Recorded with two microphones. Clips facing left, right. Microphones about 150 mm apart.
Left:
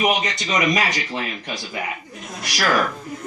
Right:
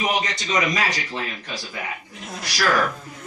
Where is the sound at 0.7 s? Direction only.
20° left (ahead or behind).